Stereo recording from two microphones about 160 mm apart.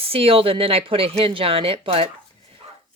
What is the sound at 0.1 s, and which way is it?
Speech, 35° right (ahead or behind).